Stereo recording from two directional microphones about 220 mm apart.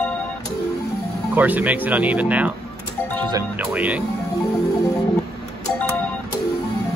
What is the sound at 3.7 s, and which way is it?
Speech, 5° right (ahead or behind).